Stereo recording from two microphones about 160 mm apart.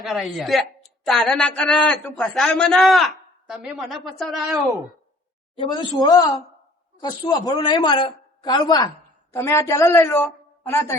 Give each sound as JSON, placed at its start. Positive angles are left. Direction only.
{"t": 0.0, "sound": "a man's voice", "side_deg": 0}
{"t": 5.5, "sound": "a man's voice", "side_deg": 30}